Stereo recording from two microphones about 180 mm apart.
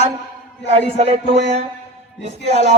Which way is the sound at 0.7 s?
35° right (ahead or behind).